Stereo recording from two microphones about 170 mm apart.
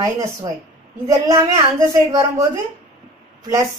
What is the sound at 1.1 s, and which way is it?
A woman's voice, 20° right (ahead or behind).